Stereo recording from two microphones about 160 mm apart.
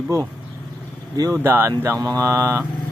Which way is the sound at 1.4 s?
15° right (ahead or behind).